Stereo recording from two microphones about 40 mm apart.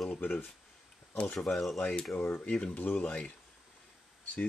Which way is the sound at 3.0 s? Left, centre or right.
Left.